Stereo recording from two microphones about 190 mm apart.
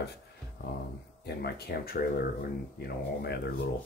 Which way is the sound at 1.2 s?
55° left (ahead or behind).